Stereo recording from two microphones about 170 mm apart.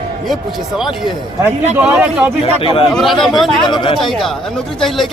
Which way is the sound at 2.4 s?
30° left (ahead or behind).